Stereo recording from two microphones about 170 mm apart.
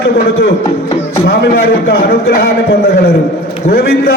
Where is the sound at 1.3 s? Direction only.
65° left (ahead or behind).